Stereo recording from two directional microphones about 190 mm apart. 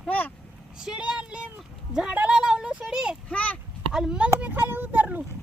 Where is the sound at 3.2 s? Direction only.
5° left (ahead or behind); by 5.2 s 10° right (ahead or behind).